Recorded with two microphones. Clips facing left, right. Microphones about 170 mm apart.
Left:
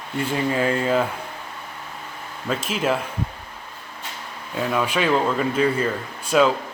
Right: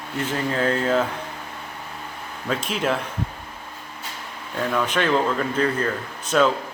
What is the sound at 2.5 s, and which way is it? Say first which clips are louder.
Speech: left 1 dB; centre (ahead or behind).